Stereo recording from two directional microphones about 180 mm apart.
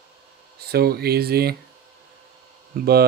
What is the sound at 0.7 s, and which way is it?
Speech, 60° right (ahead or behind).